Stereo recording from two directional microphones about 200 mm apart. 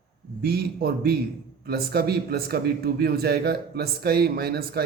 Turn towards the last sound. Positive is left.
turn(degrees=-50)  # may be behind; listen again after turning